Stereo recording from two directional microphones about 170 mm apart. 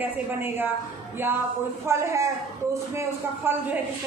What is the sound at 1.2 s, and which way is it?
A woman's voice, 15° right (ahead or behind).